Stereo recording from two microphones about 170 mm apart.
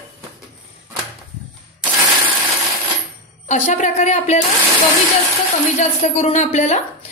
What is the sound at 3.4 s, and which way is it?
Speech, 45° left (ahead or behind).